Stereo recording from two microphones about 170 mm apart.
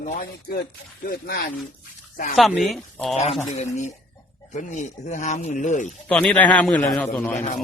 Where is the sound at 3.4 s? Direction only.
40° left (ahead or behind).